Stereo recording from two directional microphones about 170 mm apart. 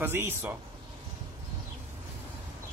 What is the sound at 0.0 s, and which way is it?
Speech, 15° right (ahead or behind).